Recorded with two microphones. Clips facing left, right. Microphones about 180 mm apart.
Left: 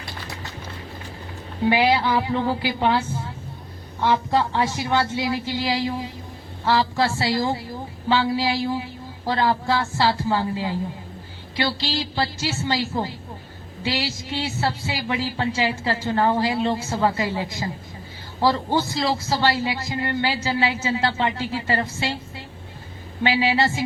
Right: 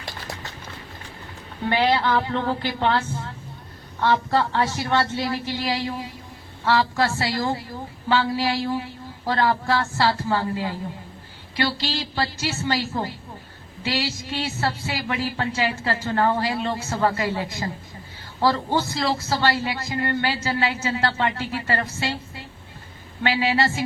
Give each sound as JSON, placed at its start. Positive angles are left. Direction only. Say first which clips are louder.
{"t": 1.7, "sound": "a man's voice", "louder": "even", "side_deg": 10}
{"t": 4.0, "sound": "a man's voice", "louder": "even", "side_deg": 15}
{"t": 12.1, "sound": "a man's voice", "louder": "left 1 dB", "side_deg": 20}
{"t": 23.2, "sound": "speech", "louder": "left 1 dB", "side_deg": 15}